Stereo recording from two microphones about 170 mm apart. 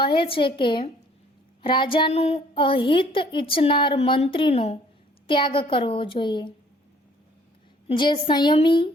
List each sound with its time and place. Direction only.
0.0 s a woman's voice: 30° left (ahead or behind)
7.9 s a woman's voice: 25° left (ahead or behind)